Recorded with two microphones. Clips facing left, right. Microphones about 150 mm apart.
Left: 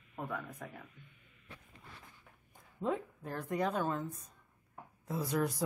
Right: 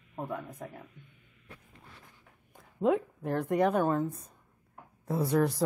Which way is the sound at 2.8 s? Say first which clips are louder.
Right 9 dB; 70° right (ahead or behind).